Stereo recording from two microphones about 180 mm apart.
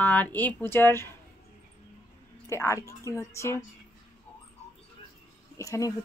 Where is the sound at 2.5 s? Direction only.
15° left (ahead or behind).